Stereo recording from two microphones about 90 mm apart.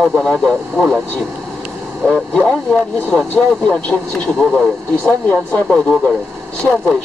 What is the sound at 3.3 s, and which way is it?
Speech, 10° left (ahead or behind).